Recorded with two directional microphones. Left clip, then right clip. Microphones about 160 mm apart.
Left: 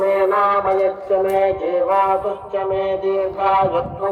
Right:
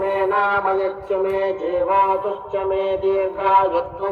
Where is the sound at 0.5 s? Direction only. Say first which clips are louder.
Left 2 dB; centre (ahead or behind).